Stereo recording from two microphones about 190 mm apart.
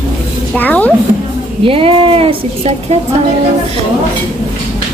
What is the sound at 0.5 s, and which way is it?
Speech, 10° left (ahead or behind).